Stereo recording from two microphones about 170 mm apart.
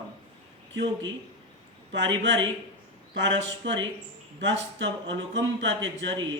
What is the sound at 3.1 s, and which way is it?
Speech, 90° right.